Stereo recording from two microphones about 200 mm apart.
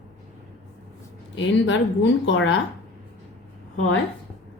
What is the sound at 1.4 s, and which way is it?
A woman's voice, 65° left (ahead or behind).